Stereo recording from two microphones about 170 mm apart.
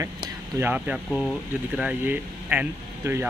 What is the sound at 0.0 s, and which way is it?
Speech, 15° right (ahead or behind).